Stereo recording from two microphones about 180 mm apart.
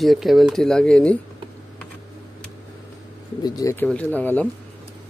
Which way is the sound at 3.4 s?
20° left (ahead or behind).